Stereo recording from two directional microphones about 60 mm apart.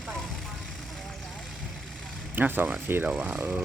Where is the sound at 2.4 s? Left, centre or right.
Right.